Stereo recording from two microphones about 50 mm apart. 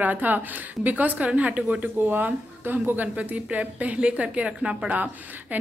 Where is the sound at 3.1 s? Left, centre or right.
Right.